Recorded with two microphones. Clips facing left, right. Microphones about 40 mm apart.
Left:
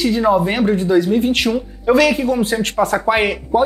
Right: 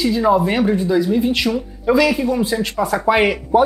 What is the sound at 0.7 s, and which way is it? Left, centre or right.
Speech, left.